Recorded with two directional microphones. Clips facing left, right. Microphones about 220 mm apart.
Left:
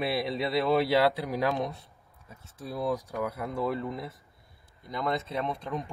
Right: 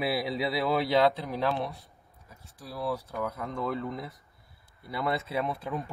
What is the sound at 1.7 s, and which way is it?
Speech, 25° left (ahead or behind).